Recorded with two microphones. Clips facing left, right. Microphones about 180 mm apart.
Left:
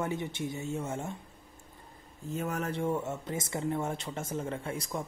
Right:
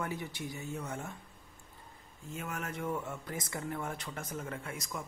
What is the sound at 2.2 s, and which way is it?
Speech, 35° left (ahead or behind).